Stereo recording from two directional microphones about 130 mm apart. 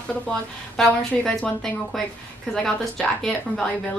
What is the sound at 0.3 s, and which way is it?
A woman's voice, 5° left (ahead or behind).